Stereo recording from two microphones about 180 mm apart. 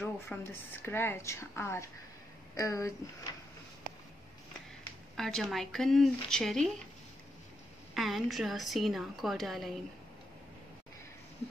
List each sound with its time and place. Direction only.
0.0 s a woman's voice: 10° left (ahead or behind)
5.1 s a woman's voice: centre (ahead or behind)
7.9 s a woman's voice: centre (ahead or behind)